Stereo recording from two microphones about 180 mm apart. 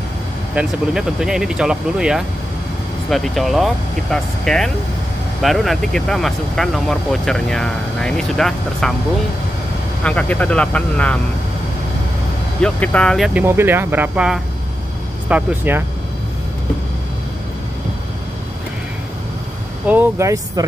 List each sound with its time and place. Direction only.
0.6 s speech: 5° right (ahead or behind)
10.0 s speech: 5° left (ahead or behind)
12.6 s speech: 5° left (ahead or behind); by 15.8 s 10° right (ahead or behind)
19.9 s speech: 15° right (ahead or behind)